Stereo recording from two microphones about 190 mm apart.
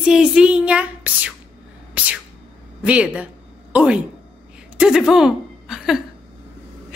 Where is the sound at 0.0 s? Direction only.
5° right (ahead or behind).